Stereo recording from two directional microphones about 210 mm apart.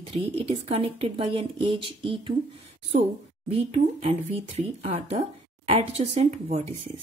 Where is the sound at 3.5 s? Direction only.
30° right (ahead or behind).